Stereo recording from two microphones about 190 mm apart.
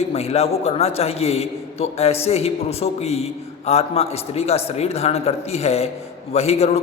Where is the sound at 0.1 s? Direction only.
35° left (ahead or behind).